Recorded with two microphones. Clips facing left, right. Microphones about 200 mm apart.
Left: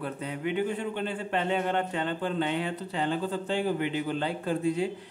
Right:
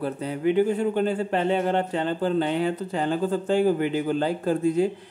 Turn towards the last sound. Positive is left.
turn(degrees=-45)  # may be behind; listen again after turning